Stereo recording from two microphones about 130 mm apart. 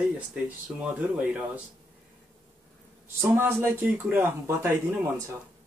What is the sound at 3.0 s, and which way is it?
Speech, 15° right (ahead or behind).